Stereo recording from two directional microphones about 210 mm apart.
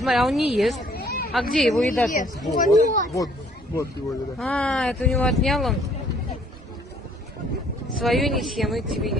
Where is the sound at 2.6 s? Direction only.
35° left (ahead or behind).